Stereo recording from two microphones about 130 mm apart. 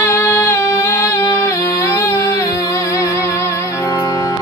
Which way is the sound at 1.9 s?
20° left (ahead or behind).